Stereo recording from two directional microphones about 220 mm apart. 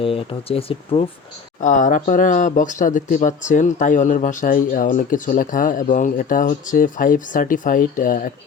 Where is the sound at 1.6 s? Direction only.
35° left (ahead or behind).